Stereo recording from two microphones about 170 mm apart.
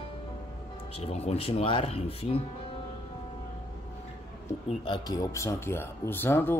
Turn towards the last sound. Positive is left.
turn(degrees=10)  # may be behind; listen again after turning